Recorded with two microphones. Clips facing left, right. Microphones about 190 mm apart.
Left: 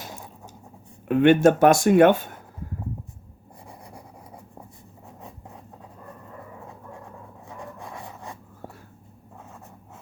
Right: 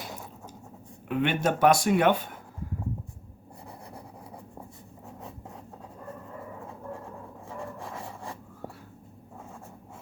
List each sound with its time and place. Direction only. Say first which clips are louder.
1.0 s speech: left 10 dB; 50° left (ahead or behind)
7.9 s filing: even; centre (ahead or behind)